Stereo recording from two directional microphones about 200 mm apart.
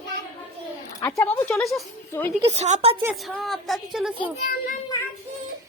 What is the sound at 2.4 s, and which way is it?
Speech, 35° right (ahead or behind).